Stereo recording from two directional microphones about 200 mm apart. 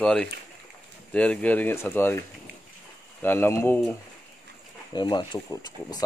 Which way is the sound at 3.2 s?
10° left (ahead or behind).